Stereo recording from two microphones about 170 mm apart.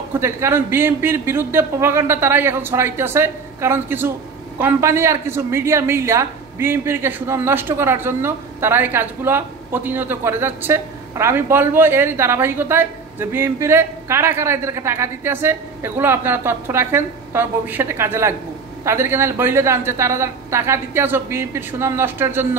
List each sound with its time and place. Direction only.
0.1 s a woman's voice: 15° right (ahead or behind)